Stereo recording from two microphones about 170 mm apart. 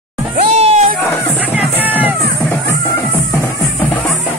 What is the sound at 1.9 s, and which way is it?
Music, 10° right (ahead or behind).